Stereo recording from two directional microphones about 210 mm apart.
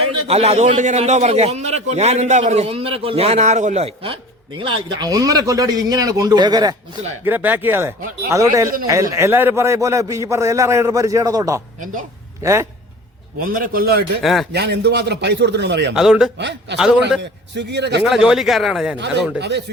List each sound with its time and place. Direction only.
0.0 s a man's voice: 30° right (ahead or behind)
7.3 s a man's voice: 10° right (ahead or behind)
11.8 s a man's voice: 40° right (ahead or behind)
12.4 s a man's voice: 15° right (ahead or behind)
13.4 s a man's voice: 40° right (ahead or behind)
14.2 s speech: centre (ahead or behind)
14.5 s a man's voice: 50° right (ahead or behind)
16.0 s speech: centre (ahead or behind)
16.4 s a man's voice: 55° right (ahead or behind)
18.0 s speech: centre (ahead or behind)
19.4 s a man's voice: 55° right (ahead or behind)